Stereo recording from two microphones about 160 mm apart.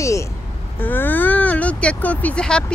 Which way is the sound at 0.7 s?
10° left (ahead or behind).